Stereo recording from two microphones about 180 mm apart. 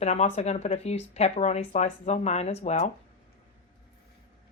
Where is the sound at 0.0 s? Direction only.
35° left (ahead or behind).